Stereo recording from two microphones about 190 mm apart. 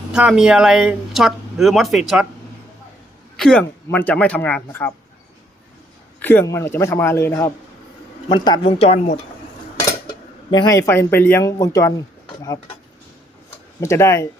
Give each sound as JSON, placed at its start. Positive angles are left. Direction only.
{"t": 0.1, "sound": "speech", "side_deg": -5}
{"t": 3.3, "sound": "a man's voice", "side_deg": 5}
{"t": 6.1, "sound": "a man's voice", "side_deg": 10}
{"t": 8.3, "sound": "speech", "side_deg": 25}
{"t": 13.8, "sound": "a man's voice", "side_deg": 15}